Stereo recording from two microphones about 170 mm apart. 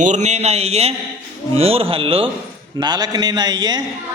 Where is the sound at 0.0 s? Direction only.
45° right (ahead or behind).